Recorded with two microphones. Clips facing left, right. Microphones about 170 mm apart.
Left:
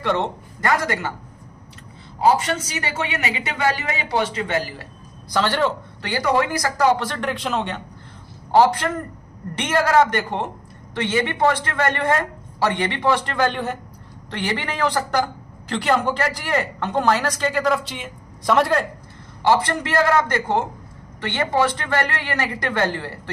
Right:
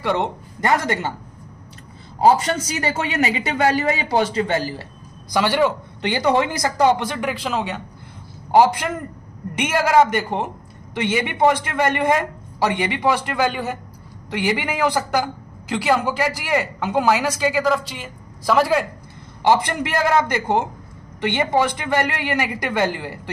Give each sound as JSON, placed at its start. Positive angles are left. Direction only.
{"t": 0.0, "sound": "speech", "side_deg": -10}
{"t": 0.6, "sound": "speech", "side_deg": -25}
{"t": 2.1, "sound": "a man's voice", "side_deg": -35}
{"t": 5.3, "sound": "speech", "side_deg": -10}
{"t": 6.0, "sound": "speech", "side_deg": -20}
{"t": 19.4, "sound": "speech", "side_deg": -15}